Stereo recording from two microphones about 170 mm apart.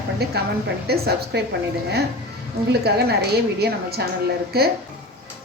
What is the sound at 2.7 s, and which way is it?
A woman's voice, 70° right (ahead or behind).